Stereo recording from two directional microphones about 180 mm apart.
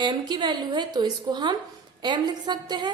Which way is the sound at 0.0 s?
25° right (ahead or behind).